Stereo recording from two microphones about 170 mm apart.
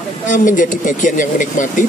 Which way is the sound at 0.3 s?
50° left (ahead or behind).